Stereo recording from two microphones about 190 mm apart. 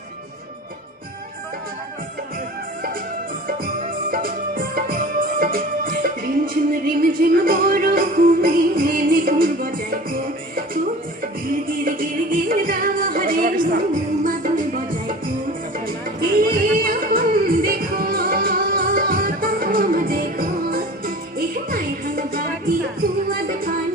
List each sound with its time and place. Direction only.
4.1 s music: 50° right (ahead or behind)
16.2 s music: 50° right (ahead or behind)